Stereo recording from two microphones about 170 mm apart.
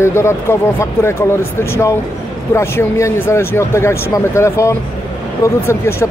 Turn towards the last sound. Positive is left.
turn(degrees=15)  # may be behind; listen again after turning